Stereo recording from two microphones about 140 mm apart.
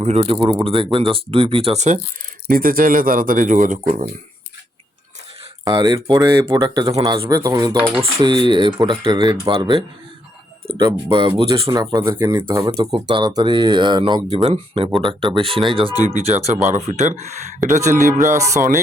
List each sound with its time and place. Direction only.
0.0 s speech: 45° right (ahead or behind)
2.5 s speech: 90° right; by 4.1 s 65° right (ahead or behind)
5.6 s speech: 25° right (ahead or behind)
5.9 s speech: 35° right (ahead or behind)
11.7 s speech: 25° right (ahead or behind)
14.3 s speech: 50° right (ahead or behind)
15.0 s speech: 35° right (ahead or behind)
15.9 s speech: 25° left (ahead or behind)
16.1 s speech: 50° right (ahead or behind)
18.3 s speech: 20° right (ahead or behind)